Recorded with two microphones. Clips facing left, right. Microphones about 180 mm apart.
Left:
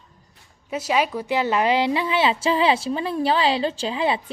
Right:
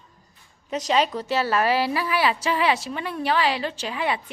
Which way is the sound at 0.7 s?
10° left (ahead or behind).